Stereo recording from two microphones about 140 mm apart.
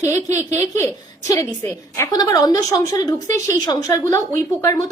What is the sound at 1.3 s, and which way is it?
A woman's voice, 20° left (ahead or behind).